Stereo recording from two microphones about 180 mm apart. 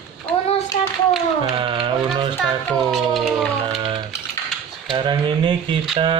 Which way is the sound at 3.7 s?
30° right (ahead or behind).